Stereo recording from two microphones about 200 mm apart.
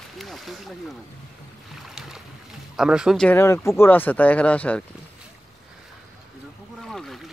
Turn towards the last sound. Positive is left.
turn(degrees=0)  # may be behind; listen again after turning